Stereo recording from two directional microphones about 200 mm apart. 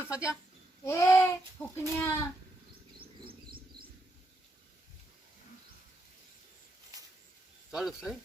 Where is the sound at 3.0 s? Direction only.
50° right (ahead or behind).